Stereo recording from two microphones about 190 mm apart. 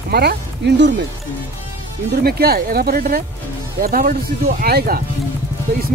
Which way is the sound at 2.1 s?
55° right (ahead or behind).